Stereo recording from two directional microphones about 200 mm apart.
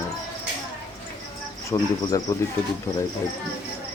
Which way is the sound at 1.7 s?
15° left (ahead or behind).